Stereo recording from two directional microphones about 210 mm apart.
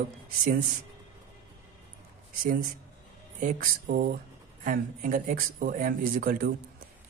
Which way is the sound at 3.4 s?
40° right (ahead or behind).